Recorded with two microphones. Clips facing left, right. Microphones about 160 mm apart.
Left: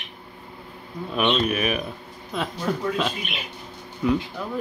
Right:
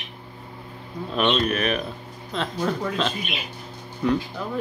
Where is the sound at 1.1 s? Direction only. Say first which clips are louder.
Even; 5° left (ahead or behind).